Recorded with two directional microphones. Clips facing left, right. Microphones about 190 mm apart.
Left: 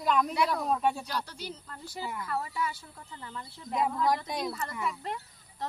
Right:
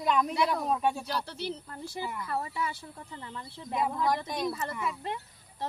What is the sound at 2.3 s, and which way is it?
Speech, 25° right (ahead or behind).